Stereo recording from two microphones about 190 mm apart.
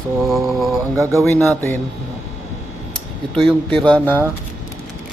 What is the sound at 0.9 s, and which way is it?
Mantra, 15° right (ahead or behind).